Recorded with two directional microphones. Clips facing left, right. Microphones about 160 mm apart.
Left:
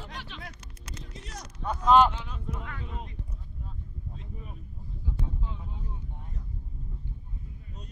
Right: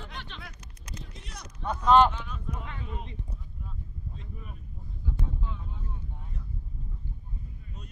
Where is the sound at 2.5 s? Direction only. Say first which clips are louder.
Left 1 dB; 25° right (ahead or behind).